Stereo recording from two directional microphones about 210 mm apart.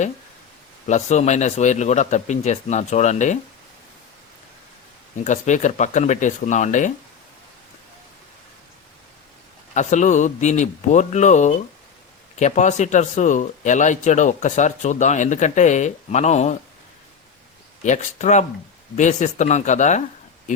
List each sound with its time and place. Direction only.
0.9 s speech: 35° left (ahead or behind)
5.2 s speech: 35° left (ahead or behind)
9.7 s speech: 35° left (ahead or behind)
17.8 s speech: 35° left (ahead or behind)